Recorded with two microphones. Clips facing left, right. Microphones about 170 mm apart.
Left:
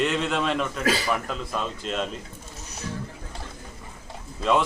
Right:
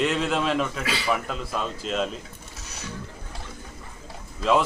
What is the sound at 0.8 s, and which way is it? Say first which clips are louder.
Speech: left 5 dB; 45° left (ahead or behind).